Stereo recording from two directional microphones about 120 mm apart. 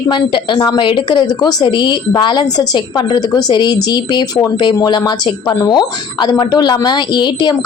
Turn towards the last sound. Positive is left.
turn(degrees=40)  # may be behind; listen again after turning